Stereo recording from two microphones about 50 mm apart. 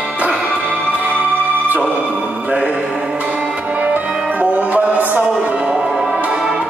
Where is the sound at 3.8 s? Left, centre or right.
Right.